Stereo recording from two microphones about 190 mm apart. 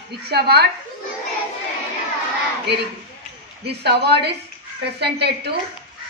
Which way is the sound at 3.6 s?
60° right (ahead or behind).